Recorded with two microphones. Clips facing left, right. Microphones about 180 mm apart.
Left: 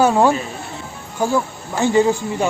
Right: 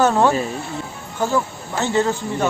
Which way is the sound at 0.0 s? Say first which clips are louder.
Left 1 dB; 10° left (ahead or behind).